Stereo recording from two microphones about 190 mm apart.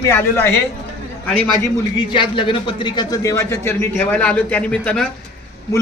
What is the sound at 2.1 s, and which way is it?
Speech, 25° left (ahead or behind).